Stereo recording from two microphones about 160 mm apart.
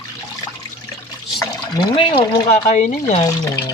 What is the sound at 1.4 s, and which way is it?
Speech, 25° left (ahead or behind).